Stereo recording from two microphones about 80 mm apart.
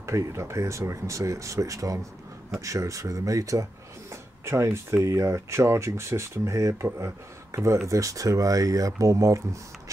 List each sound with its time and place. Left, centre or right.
0.0 s speech: right